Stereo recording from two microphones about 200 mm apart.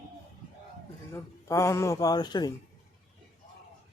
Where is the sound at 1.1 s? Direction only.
15° left (ahead or behind).